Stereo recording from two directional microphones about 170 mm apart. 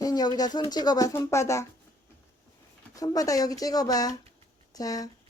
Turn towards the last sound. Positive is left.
turn(degrees=20)  # may be behind; listen again after turning